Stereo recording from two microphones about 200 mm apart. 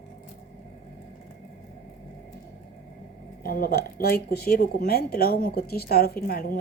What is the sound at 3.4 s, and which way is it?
Speech, 50° left (ahead or behind).